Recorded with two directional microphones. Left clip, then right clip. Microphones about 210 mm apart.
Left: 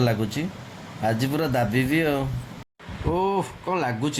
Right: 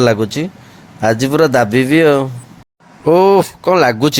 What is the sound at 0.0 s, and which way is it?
Speech, 40° right (ahead or behind).